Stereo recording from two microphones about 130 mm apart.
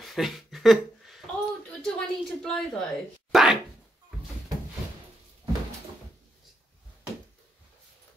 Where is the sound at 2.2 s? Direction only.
5° left (ahead or behind).